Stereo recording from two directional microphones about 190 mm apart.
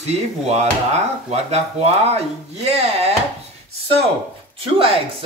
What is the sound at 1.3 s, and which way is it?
Speech, 35° right (ahead or behind).